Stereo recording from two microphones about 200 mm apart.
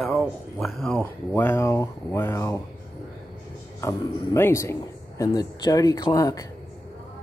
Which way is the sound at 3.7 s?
15° left (ahead or behind).